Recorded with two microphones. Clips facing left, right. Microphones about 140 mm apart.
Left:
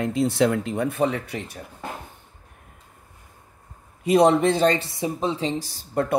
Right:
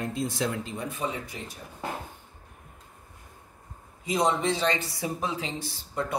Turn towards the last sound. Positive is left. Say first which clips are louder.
# left 7 dB
turn(degrees=40)  # may be behind; listen again after turning